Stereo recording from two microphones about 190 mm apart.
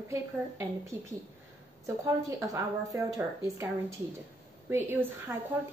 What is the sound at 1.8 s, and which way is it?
Speech, 15° right (ahead or behind).